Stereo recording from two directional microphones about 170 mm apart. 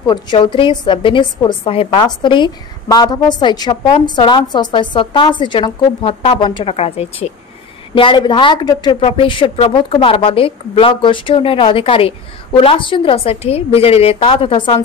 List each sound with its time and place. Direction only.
0.0 s a woman's voice: 25° left (ahead or behind)